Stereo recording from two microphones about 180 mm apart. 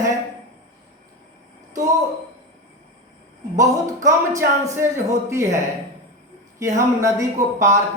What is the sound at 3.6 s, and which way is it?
Speech, 15° right (ahead or behind).